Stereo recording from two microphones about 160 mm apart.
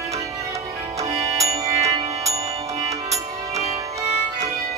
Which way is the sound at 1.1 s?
40° right (ahead or behind).